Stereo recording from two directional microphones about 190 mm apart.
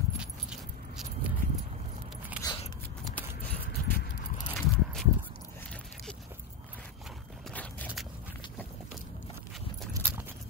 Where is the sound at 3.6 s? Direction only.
55° left (ahead or behind).